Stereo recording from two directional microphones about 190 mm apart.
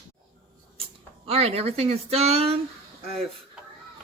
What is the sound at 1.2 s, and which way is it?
Speech, 30° right (ahead or behind).